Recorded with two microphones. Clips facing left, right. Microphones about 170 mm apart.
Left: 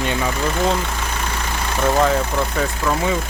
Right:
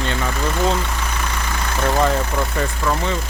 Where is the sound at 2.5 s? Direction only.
Centre (ahead or behind).